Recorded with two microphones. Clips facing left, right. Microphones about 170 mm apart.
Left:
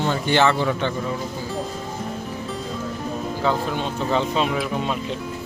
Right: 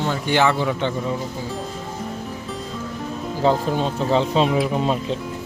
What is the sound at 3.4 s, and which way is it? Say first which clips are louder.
Speech: right 5 dB; 35° right (ahead or behind).